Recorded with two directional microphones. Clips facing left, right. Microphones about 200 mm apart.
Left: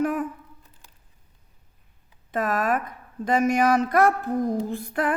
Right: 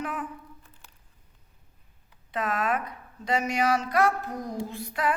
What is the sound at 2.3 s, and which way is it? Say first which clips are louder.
A woman's voice: left 4 dB; 45° left (ahead or behind).